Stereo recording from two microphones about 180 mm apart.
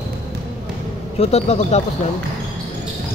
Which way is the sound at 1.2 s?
35° left (ahead or behind).